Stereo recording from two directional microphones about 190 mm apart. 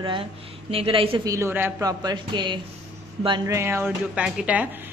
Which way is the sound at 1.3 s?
10° right (ahead or behind).